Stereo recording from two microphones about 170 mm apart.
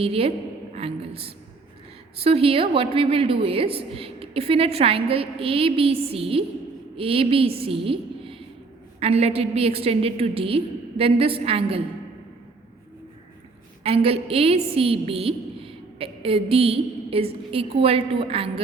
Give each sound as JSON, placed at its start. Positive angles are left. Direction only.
{"t": 0.0, "sound": "a woman's voice", "side_deg": -35}
{"t": 0.8, "sound": "a sound", "side_deg": -35}
{"t": 2.2, "sound": "a woman's voice", "side_deg": -35}
{"t": 13.8, "sound": "a woman's voice", "side_deg": -35}